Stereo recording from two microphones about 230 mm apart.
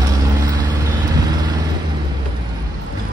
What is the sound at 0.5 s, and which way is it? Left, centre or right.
Vehicle, centre.